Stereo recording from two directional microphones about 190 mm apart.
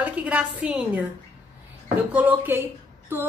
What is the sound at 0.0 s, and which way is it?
A woman's voice, 5° right (ahead or behind).